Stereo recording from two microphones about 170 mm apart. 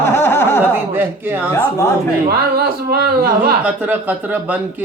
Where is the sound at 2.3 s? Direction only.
65° right (ahead or behind).